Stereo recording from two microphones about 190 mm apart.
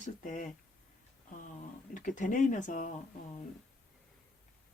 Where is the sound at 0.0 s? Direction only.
40° left (ahead or behind).